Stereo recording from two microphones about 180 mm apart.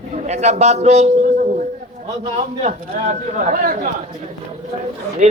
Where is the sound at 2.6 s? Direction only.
45° right (ahead or behind).